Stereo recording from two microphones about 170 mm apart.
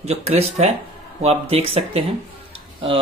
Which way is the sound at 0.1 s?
40° right (ahead or behind).